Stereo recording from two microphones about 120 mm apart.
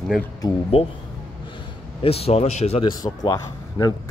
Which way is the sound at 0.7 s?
55° left (ahead or behind).